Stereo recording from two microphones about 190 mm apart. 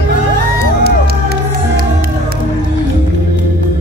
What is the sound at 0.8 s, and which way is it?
Music, 55° right (ahead or behind).